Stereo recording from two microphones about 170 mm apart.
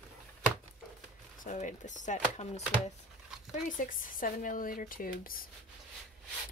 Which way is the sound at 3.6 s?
50° left (ahead or behind).